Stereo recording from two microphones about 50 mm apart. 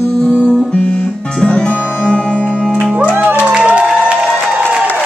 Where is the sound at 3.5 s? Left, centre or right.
Centre.